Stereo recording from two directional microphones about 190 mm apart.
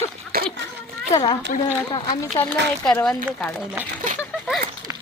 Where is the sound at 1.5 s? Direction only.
40° left (ahead or behind).